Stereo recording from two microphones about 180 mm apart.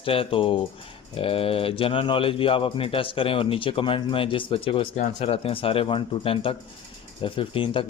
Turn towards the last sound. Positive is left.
turn(degrees=30)  # may be behind; listen again after turning